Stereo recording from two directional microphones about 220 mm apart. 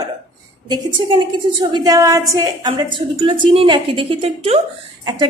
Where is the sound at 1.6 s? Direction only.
20° right (ahead or behind).